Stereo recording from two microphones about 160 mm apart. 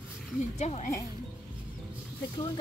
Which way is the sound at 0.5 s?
45° left (ahead or behind).